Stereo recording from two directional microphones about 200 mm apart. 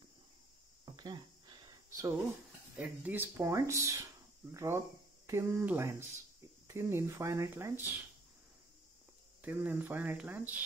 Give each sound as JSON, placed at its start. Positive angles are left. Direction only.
{"t": 0.8, "sound": "a sound", "side_deg": -20}
{"t": 2.8, "sound": "speech", "side_deg": -10}
{"t": 9.4, "sound": "speech", "side_deg": -10}